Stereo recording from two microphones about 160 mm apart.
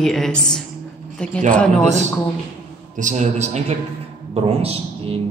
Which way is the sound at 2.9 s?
50° right (ahead or behind).